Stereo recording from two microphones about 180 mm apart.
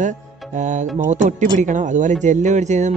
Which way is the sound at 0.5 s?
45° right (ahead or behind).